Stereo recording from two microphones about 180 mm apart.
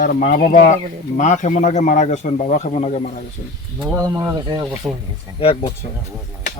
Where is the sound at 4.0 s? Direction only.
20° right (ahead or behind).